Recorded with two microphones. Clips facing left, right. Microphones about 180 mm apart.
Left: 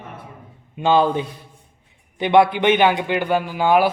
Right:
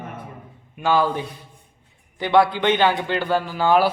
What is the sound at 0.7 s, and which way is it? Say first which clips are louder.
A man's voice: left 3 dB; 20° left (ahead or behind).